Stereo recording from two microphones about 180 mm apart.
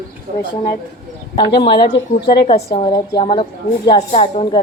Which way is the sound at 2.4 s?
30° left (ahead or behind).